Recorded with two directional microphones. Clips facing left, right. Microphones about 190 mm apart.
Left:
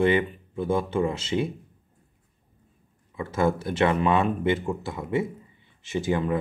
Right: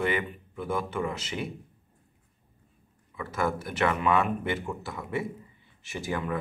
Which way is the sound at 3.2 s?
25° left (ahead or behind).